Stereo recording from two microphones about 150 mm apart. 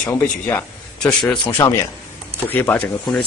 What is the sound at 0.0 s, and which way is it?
A man's voice, 10° left (ahead or behind).